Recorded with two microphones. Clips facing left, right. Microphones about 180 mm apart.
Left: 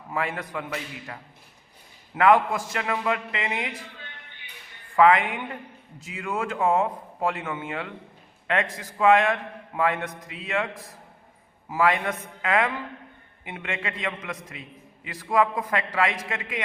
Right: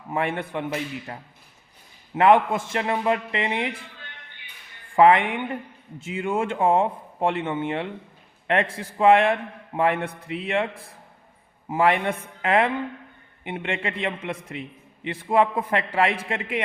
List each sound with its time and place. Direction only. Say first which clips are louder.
0.1 s a man's voice: right 3 dB; 30° right (ahead or behind)
4.9 s a man's voice: right 2 dB; 30° right (ahead or behind)